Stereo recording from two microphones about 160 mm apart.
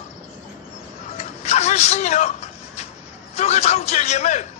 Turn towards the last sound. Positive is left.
turn(degrees=50)  # may be behind; listen again after turning